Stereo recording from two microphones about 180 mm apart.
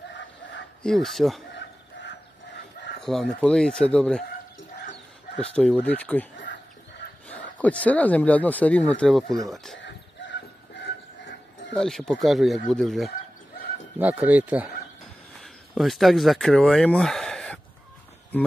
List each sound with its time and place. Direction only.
0.1 s dog: 80° left
0.8 s speech: centre (ahead or behind)
3.0 s a sound: centre (ahead or behind)
3.4 s speech: 5° left (ahead or behind)
5.3 s speech: 35° left (ahead or behind)
5.6 s speech: 5° left (ahead or behind)
7.2 s speech: 5° left (ahead or behind)
10.8 s a sound: 90° left
11.7 s speech: 5° left (ahead or behind)